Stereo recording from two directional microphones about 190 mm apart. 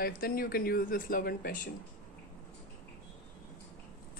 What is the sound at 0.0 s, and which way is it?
Speech, 50° left (ahead or behind).